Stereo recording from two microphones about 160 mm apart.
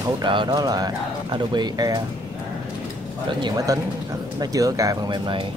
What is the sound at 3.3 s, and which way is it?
Speech, 25° right (ahead or behind).